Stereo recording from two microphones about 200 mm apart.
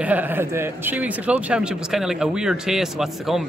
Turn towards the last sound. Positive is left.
turn(degrees=0)  # may be behind; listen again after turning